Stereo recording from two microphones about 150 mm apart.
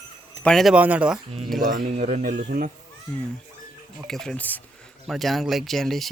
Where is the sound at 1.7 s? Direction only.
50° right (ahead or behind).